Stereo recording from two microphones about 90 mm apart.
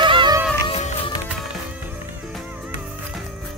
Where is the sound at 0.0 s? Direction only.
60° right (ahead or behind).